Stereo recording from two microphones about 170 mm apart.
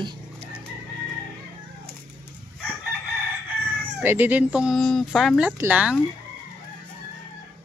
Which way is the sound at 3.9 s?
10° right (ahead or behind).